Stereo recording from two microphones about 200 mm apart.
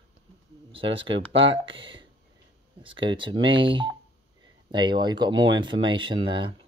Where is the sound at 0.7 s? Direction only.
25° right (ahead or behind).